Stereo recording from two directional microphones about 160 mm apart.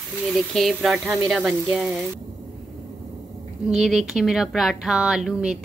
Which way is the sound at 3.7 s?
5° right (ahead or behind).